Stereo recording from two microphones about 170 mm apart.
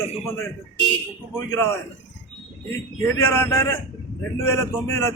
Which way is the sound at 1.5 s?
15° left (ahead or behind).